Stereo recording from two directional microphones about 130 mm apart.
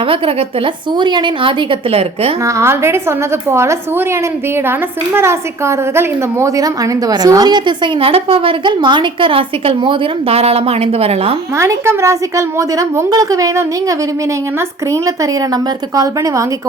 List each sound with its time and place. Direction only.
0.1 s a woman's voice: 45° right (ahead or behind)
2.4 s a woman's voice: 25° right (ahead or behind); by 11.3 s 50° right (ahead or behind)
11.5 s a woman's voice: 20° right (ahead or behind)